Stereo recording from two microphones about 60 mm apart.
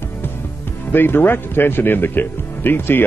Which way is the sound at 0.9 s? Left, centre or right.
Left.